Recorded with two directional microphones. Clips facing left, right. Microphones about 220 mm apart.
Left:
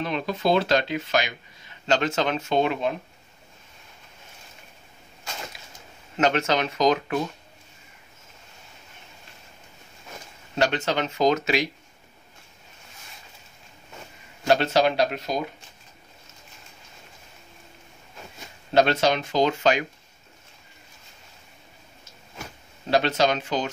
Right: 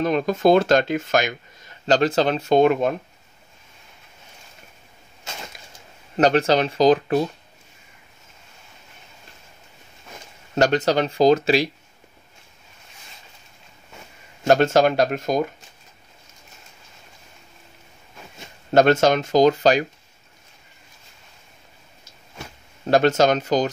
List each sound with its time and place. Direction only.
0.0 s speech: 45° right (ahead or behind)
6.1 s speech: 35° right (ahead or behind)
10.5 s speech: 40° right (ahead or behind)
14.5 s speech: 45° right (ahead or behind)
18.7 s speech: 50° right (ahead or behind)
22.8 s speech: 45° right (ahead or behind)